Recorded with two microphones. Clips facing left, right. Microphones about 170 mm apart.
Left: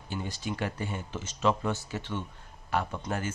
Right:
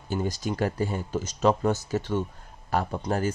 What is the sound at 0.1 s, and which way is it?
Speech, 40° right (ahead or behind).